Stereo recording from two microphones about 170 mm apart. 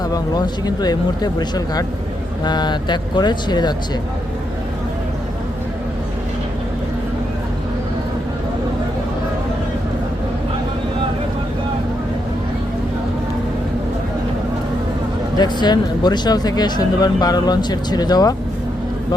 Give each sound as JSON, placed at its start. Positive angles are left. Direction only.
{"t": 0.1, "sound": "speech", "side_deg": 25}
{"t": 15.4, "sound": "speech", "side_deg": 25}